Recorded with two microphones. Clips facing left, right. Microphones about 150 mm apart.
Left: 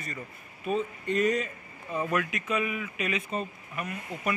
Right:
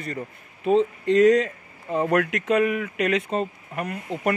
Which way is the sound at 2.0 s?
70° right (ahead or behind).